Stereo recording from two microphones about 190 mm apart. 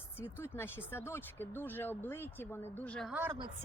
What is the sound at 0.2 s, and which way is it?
Speech, 10° left (ahead or behind).